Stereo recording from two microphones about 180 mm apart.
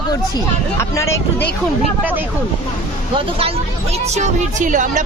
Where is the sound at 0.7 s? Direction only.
15° left (ahead or behind).